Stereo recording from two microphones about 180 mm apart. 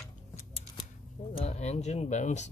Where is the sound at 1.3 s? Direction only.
35° left (ahead or behind).